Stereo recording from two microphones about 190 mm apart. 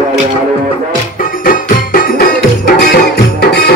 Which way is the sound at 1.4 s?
45° left (ahead or behind).